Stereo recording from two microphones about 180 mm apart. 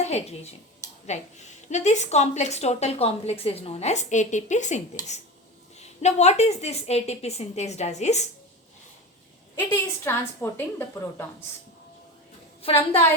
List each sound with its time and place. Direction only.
0.0 s a woman's voice: 35° left (ahead or behind)
5.8 s a woman's voice: 40° left (ahead or behind)
9.7 s a woman's voice: 15° left (ahead or behind)
12.6 s a woman's voice: 30° left (ahead or behind)